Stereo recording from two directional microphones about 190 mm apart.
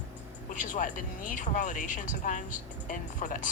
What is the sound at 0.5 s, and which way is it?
Speech, 45° left (ahead or behind).